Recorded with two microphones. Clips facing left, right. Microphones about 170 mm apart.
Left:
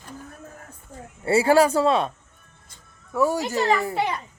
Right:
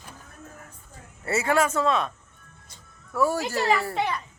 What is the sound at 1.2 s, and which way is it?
Speech, 30° left (ahead or behind).